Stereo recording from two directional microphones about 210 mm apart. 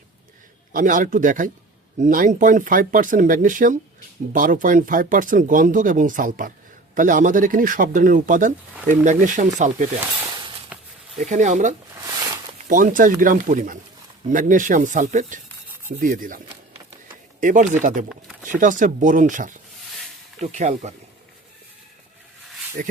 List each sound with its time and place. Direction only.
0.7 s speech: 40° right (ahead or behind)
10.3 s a sound: 20° right (ahead or behind)
11.2 s speech: 35° right (ahead or behind)
17.4 s speech: 40° right (ahead or behind)
22.8 s speech: 40° right (ahead or behind)